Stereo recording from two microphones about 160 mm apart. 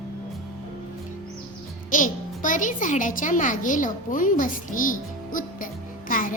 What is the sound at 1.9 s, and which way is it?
A child's voice, 55° left (ahead or behind).